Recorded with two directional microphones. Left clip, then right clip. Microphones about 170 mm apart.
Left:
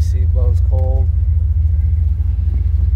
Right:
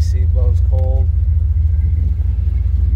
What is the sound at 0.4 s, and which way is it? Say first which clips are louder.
Vehicle: left 1 dB; 25° left (ahead or behind).